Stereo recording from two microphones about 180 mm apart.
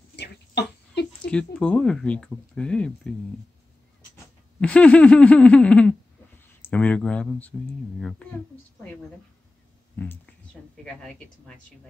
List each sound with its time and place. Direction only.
0.1 s a sound: 70° left (ahead or behind)
1.2 s speech: 5° left (ahead or behind)
4.6 s speech: 5° left (ahead or behind)
9.9 s speech: 10° left (ahead or behind)